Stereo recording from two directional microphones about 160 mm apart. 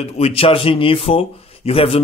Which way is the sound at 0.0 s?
40° left (ahead or behind).